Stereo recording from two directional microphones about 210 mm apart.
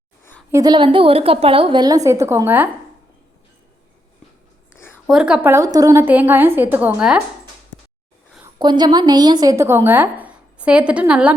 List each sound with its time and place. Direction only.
0.5 s a woman's voice: 20° right (ahead or behind)
5.0 s a woman's voice: 5° right (ahead or behind)
8.5 s a woman's voice: 20° right (ahead or behind); by 11.3 s 5° right (ahead or behind)